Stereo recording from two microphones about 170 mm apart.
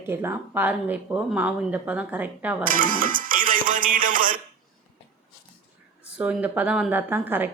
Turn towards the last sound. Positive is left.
turn(degrees=-10)  # may be behind; listen again after turning